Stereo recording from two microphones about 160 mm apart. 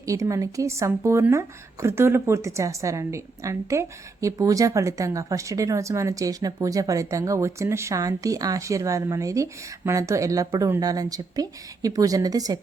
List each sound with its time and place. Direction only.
0.0 s speech: 20° right (ahead or behind)